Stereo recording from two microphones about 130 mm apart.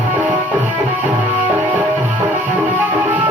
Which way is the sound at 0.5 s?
15° right (ahead or behind).